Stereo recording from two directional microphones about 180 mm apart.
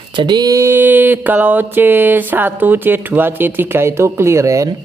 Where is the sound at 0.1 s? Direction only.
25° right (ahead or behind).